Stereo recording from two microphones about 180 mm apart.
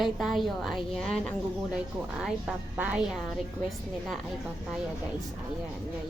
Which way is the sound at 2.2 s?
10° right (ahead or behind).